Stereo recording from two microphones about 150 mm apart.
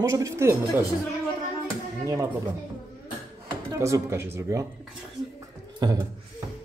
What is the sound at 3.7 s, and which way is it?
Speech, 20° right (ahead or behind).